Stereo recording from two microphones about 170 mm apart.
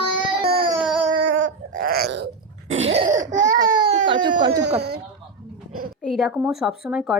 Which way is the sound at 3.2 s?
50° right (ahead or behind).